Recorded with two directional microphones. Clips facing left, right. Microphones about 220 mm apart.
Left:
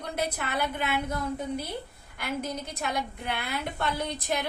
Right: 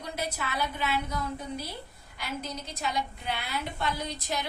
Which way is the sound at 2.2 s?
55° left (ahead or behind).